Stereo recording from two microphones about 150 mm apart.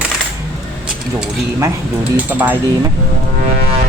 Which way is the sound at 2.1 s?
10° right (ahead or behind).